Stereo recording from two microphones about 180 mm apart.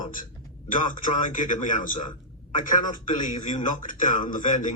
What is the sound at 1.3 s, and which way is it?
Speech, 45° left (ahead or behind).